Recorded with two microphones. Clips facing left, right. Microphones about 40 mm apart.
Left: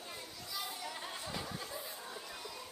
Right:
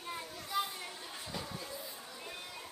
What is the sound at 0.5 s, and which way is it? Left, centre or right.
Children playing, right.